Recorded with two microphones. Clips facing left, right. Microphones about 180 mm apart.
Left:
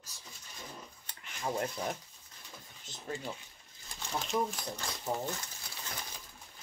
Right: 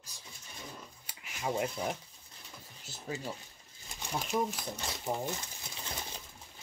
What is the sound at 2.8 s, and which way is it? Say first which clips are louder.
Speech: right 1 dB; 5° right (ahead or behind).